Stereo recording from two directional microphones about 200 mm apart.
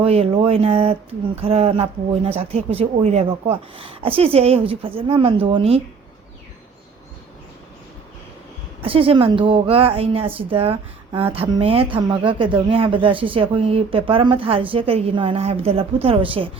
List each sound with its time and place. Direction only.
0.0 s speech: 30° right (ahead or behind)
8.8 s speech: 25° right (ahead or behind)